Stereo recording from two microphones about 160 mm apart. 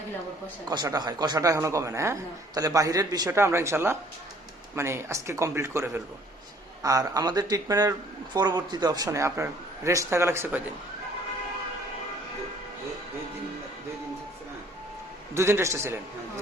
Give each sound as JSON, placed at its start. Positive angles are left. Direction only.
{"t": 0.7, "sound": "speech", "side_deg": -25}
{"t": 15.4, "sound": "speech", "side_deg": -15}